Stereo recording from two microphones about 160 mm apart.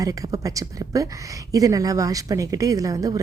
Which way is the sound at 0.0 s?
20° right (ahead or behind).